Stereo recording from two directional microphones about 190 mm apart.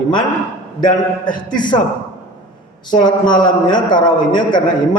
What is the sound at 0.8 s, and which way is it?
Speech, 25° left (ahead or behind).